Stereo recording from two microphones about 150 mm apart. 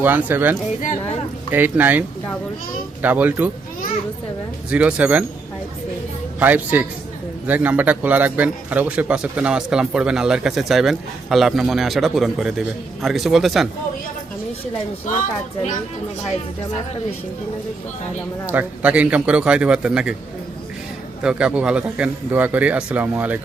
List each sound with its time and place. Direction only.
0.0 s speech: 10° right (ahead or behind)
0.8 s speech: 50° left (ahead or behind)
1.5 s speech: 10° right (ahead or behind)
4.7 s speech: 10° right (ahead or behind)
6.4 s a man's voice: 10° right (ahead or behind)
15.1 s speech: 65° left (ahead or behind)
18.4 s speech: 10° right (ahead or behind)
21.2 s speech: 5° right (ahead or behind)